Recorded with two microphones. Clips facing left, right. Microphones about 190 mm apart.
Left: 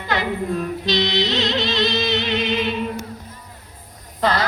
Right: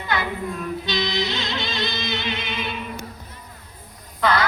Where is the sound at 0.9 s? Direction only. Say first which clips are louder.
Left 5 dB; 40° left (ahead or behind).